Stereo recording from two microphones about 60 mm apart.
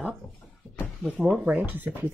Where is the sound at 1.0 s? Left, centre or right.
Right.